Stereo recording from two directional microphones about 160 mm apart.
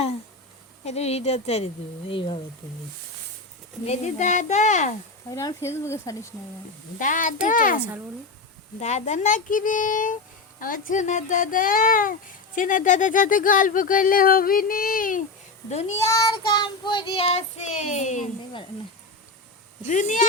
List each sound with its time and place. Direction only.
0.9 s child singing: 40° left (ahead or behind)
3.8 s speech: 45° left (ahead or behind)
5.3 s speech: 20° left (ahead or behind)
7.0 s speech: 55° left (ahead or behind)
8.8 s speech: 45° left (ahead or behind)
16.0 s child singing: 25° left (ahead or behind); by 18.3 s 50° left (ahead or behind)
19.9 s speech: 50° left (ahead or behind)